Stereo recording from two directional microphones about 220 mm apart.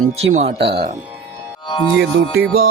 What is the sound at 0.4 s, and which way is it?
Speech, 50° right (ahead or behind).